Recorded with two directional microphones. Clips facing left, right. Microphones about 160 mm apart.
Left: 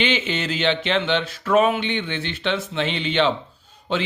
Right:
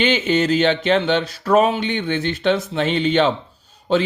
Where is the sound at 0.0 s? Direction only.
40° right (ahead or behind).